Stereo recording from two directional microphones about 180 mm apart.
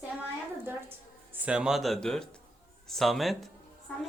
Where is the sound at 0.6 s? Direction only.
10° right (ahead or behind).